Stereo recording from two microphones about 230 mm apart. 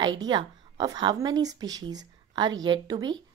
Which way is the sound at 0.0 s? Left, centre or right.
Centre.